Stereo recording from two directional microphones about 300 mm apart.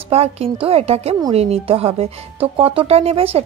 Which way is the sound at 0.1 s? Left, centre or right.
Centre.